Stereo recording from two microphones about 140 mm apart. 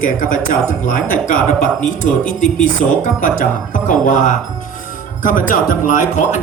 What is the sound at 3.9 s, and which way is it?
A man's voice, 70° left (ahead or behind).